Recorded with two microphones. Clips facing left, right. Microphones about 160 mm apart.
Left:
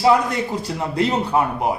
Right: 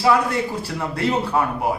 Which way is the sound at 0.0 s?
20° left (ahead or behind).